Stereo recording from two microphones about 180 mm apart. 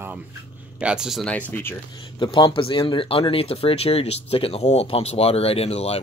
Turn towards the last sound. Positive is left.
turn(degrees=35)  # may be behind; listen again after turning